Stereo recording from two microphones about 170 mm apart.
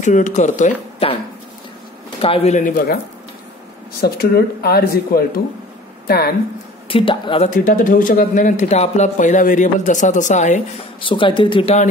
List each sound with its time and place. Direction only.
0.0 s speech: 45° left (ahead or behind)
2.1 s a man's voice: 35° left (ahead or behind)
4.0 s speech: 65° left (ahead or behind)
6.9 s a man's voice: 30° left (ahead or behind)
7.4 s speech: 50° left (ahead or behind)
11.0 s speech: 30° left (ahead or behind)